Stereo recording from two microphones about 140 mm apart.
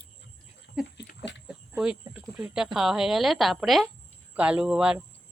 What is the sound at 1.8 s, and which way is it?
Speech, 5° right (ahead or behind).